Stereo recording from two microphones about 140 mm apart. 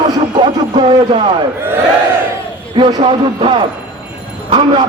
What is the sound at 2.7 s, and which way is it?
Speech, 35° right (ahead or behind).